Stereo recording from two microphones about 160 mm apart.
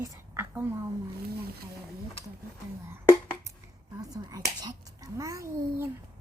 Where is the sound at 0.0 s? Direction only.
15° right (ahead or behind).